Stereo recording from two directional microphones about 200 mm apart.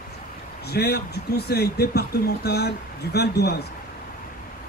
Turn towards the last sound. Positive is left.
turn(degrees=55)  # may be behind; listen again after turning